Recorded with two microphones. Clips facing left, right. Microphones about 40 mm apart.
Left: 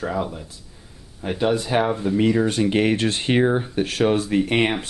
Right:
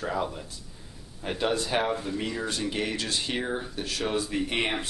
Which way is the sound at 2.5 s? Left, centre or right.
Left.